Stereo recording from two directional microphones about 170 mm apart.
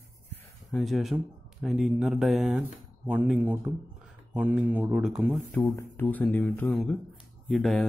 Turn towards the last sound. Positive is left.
turn(degrees=0)  # may be behind; listen again after turning